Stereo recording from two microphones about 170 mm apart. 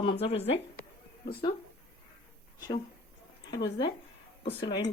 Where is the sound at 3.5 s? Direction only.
90° left.